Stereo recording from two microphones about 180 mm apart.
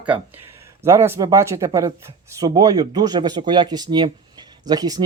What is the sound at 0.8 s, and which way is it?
Speech, 15° right (ahead or behind).